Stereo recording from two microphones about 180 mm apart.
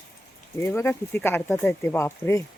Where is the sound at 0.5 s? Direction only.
15° left (ahead or behind).